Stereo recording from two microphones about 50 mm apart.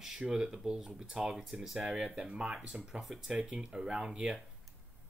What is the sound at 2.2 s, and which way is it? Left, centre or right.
Speech, centre.